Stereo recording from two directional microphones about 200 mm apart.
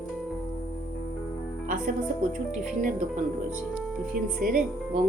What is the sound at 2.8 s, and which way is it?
Speech, 40° right (ahead or behind).